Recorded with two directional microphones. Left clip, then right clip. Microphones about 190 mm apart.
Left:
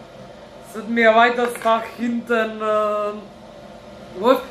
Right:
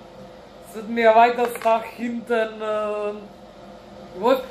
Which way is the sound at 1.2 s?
5° left (ahead or behind).